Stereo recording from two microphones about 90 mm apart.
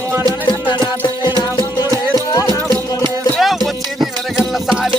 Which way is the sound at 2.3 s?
40° left (ahead or behind).